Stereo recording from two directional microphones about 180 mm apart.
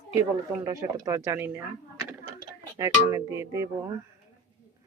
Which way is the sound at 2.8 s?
15° right (ahead or behind).